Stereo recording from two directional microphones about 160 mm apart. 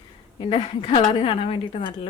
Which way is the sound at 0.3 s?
35° left (ahead or behind).